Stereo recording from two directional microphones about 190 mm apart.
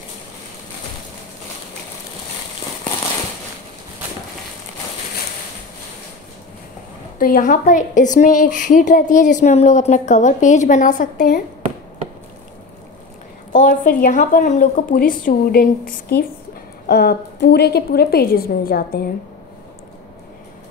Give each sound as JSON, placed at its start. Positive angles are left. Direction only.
{"t": 7.2, "sound": "a woman's voice", "side_deg": 45}
{"t": 13.5, "sound": "a woman's voice", "side_deg": 45}